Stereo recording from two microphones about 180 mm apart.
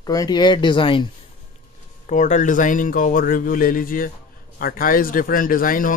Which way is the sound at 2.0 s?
45° left (ahead or behind).